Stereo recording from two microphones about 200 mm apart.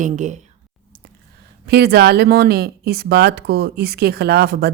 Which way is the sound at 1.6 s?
55° right (ahead or behind).